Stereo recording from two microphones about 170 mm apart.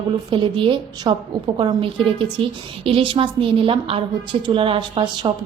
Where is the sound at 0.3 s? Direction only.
30° right (ahead or behind).